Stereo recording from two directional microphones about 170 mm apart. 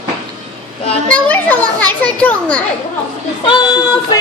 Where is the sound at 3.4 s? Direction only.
30° left (ahead or behind).